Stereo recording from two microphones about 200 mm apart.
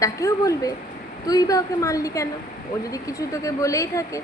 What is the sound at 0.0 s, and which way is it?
A woman's voice, 15° left (ahead or behind).